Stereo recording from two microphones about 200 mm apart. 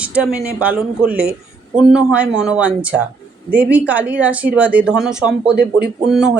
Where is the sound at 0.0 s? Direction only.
5° right (ahead or behind).